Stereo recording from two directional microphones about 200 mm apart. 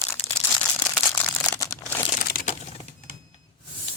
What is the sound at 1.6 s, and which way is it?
Crumpling, 10° left (ahead or behind).